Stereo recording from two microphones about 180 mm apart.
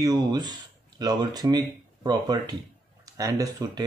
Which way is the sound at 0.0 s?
20° right (ahead or behind).